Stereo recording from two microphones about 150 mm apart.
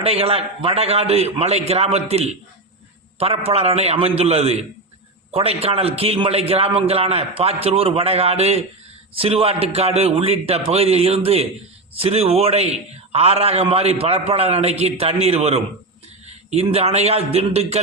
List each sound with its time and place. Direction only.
0.0 s a man's voice: 40° right (ahead or behind)